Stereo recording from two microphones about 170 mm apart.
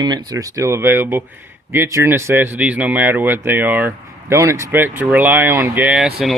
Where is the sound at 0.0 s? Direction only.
20° right (ahead or behind).